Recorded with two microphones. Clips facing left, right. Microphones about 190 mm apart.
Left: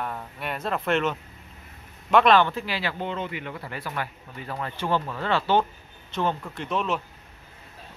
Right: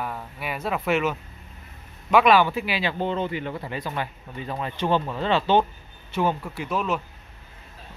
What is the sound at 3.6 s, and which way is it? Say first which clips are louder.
Speech: right 3 dB; 20° right (ahead or behind).